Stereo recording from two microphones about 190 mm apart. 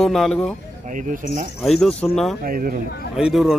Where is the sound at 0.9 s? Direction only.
45° right (ahead or behind).